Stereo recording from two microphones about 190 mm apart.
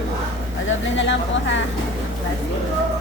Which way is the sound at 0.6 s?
75° left (ahead or behind).